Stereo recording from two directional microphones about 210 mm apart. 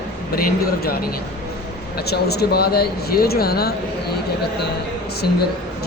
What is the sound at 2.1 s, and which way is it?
Speech, 50° left (ahead or behind).